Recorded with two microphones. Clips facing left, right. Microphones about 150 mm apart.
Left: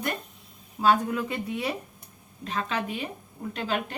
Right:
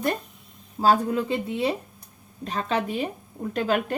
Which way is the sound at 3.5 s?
45° right (ahead or behind).